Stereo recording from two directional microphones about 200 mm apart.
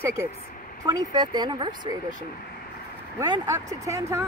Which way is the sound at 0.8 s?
20° right (ahead or behind).